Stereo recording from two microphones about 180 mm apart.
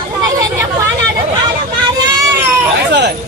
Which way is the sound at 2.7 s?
75° right (ahead or behind).